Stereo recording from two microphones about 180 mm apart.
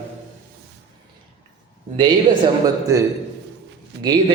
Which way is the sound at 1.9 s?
25° right (ahead or behind).